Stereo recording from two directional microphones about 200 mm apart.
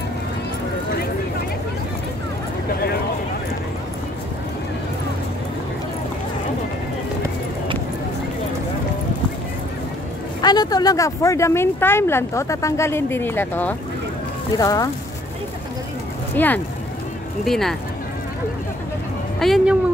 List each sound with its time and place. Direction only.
10.4 s speech: 20° left (ahead or behind)
16.3 s speech: 10° left (ahead or behind)
19.4 s speech: centre (ahead or behind)